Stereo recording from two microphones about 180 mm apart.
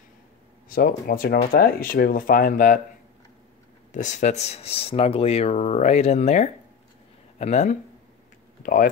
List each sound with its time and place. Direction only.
0.7 s speech: 55° left (ahead or behind)
3.9 s speech: 40° left (ahead or behind)
8.6 s speech: 50° left (ahead or behind)